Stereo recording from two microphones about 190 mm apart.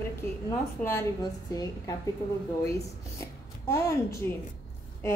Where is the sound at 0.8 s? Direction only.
15° left (ahead or behind).